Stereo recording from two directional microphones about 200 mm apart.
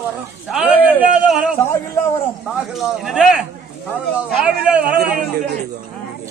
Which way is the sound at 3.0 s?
Centre (ahead or behind).